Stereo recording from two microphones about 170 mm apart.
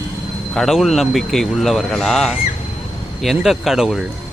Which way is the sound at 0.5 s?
Centre (ahead or behind).